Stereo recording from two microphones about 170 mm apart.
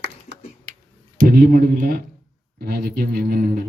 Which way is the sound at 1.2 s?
65° right (ahead or behind).